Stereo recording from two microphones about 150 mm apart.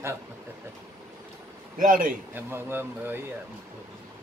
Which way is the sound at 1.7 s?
65° right (ahead or behind).